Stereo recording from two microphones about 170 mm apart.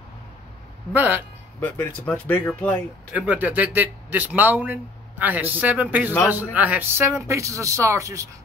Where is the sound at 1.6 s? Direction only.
10° left (ahead or behind).